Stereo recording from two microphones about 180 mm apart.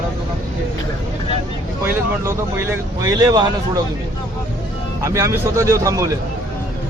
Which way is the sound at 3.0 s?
20° right (ahead or behind).